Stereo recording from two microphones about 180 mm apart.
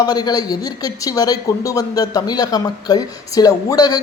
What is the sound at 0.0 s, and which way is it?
A man's voice, 20° left (ahead or behind).